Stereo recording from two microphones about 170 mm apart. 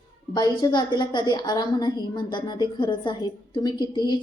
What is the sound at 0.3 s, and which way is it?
A woman's voice, 25° left (ahead or behind).